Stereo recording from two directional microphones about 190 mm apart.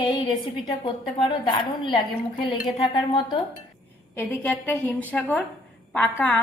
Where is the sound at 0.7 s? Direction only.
25° left (ahead or behind).